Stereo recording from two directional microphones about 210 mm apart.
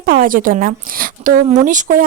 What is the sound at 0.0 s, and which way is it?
A woman's voice, 40° right (ahead or behind).